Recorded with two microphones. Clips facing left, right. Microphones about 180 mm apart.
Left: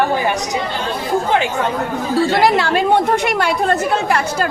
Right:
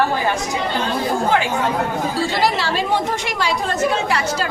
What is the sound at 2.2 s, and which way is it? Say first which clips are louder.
A woman's voice: left 6 dB; 55° left (ahead or behind).